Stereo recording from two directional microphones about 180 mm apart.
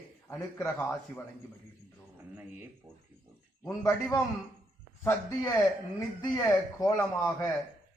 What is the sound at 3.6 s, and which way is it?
A man's voice, 15° left (ahead or behind).